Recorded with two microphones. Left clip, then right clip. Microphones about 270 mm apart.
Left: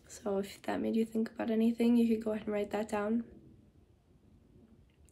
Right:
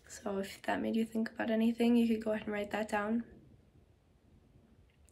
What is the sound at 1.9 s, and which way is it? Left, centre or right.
Speech, centre.